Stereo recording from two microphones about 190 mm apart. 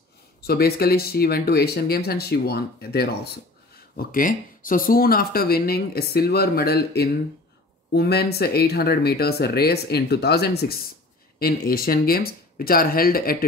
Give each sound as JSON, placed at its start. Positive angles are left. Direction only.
{"t": 0.4, "sound": "speech", "side_deg": 55}